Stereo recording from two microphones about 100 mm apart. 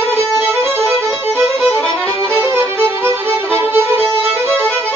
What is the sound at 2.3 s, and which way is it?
Violin, 25° right (ahead or behind).